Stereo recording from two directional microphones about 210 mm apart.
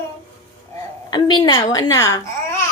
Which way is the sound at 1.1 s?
20° left (ahead or behind).